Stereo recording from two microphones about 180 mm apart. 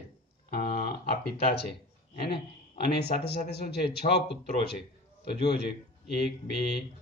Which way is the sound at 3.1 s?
40° left (ahead or behind).